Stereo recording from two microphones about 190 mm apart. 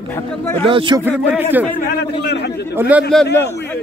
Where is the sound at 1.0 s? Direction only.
10° right (ahead or behind).